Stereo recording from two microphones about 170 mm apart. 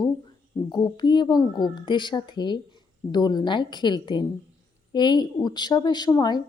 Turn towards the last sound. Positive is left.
turn(degrees=25)  # may be behind; listen again after turning